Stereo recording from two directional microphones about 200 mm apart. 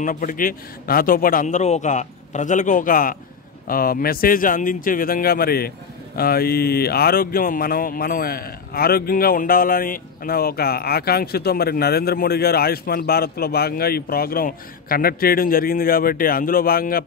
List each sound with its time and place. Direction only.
0.0 s a man's voice: 40° left (ahead or behind)